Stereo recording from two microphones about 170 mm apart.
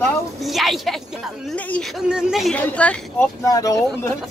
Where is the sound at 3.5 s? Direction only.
20° left (ahead or behind).